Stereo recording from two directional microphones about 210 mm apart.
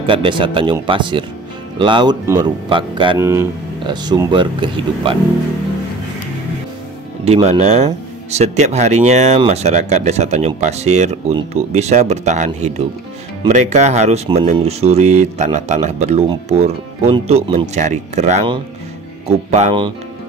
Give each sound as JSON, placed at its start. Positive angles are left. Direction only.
{"t": 0.0, "sound": "speech", "side_deg": -25}
{"t": 3.2, "sound": "speech", "side_deg": -15}
{"t": 7.2, "sound": "speech", "side_deg": -30}